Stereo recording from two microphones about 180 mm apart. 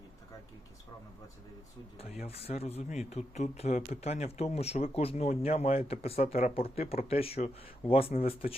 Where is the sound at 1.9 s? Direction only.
35° left (ahead or behind).